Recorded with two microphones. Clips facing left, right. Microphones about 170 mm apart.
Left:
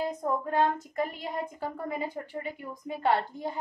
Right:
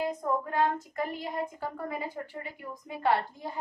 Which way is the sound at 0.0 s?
25° left (ahead or behind).